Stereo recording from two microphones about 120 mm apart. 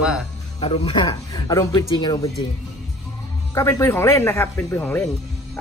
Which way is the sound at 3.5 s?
20° left (ahead or behind).